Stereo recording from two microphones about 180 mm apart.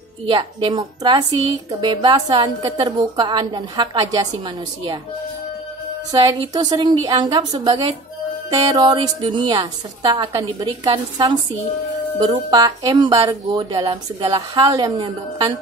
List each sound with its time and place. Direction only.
0.3 s speech: 25° right (ahead or behind)
6.1 s speech: 25° right (ahead or behind)